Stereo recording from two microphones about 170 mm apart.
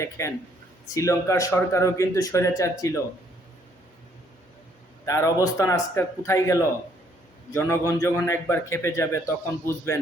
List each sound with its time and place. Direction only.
0.2 s a man's voice: 15° left (ahead or behind)
5.0 s a man's voice: 20° left (ahead or behind)